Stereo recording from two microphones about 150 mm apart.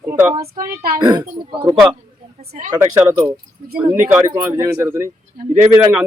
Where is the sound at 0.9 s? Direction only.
25° right (ahead or behind).